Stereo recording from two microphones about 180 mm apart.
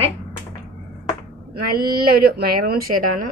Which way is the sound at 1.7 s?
55° right (ahead or behind).